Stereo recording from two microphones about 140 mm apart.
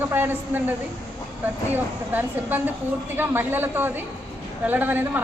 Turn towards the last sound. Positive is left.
turn(degrees=-15)  # may be behind; listen again after turning